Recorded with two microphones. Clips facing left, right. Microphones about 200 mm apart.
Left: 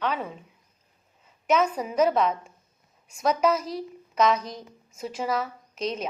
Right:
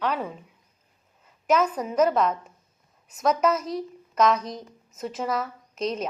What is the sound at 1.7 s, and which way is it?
A woman's voice, 5° left (ahead or behind).